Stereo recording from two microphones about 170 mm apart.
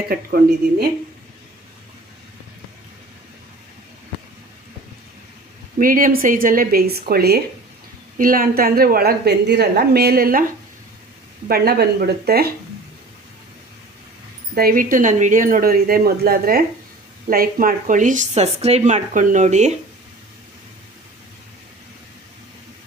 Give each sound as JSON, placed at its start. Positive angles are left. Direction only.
{"t": 0.1, "sound": "a woman's voice", "side_deg": -60}
{"t": 5.8, "sound": "a woman's voice", "side_deg": -55}
{"t": 8.2, "sound": "a woman's voice", "side_deg": -55}
{"t": 11.4, "sound": "a woman's voice", "side_deg": -65}
{"t": 14.5, "sound": "a woman's voice", "side_deg": -60}